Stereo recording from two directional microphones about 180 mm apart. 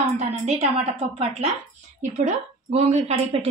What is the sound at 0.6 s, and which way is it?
Speech, 30° right (ahead or behind).